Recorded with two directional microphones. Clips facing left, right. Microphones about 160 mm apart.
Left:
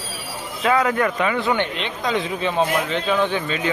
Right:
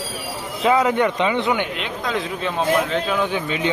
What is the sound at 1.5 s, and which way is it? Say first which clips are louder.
A man's voice: left 1 dB; 5° right (ahead or behind).